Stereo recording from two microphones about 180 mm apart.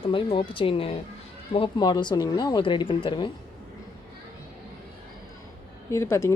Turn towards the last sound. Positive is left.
turn(degrees=15)  # may be behind; listen again after turning